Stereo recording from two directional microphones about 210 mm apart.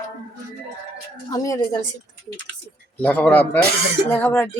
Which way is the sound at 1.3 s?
15° left (ahead or behind).